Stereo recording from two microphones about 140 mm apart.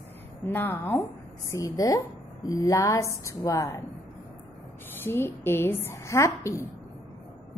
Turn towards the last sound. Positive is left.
turn(degrees=20)  # may be behind; listen again after turning